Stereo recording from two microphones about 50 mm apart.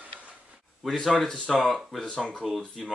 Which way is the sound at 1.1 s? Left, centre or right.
Centre.